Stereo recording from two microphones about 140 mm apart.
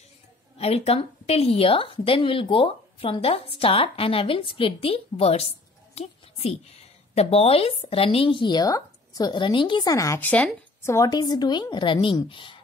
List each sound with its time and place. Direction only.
0.6 s a woman's voice: 50° left (ahead or behind); by 10.9 s 10° left (ahead or behind)
10.9 s speech: 25° left (ahead or behind)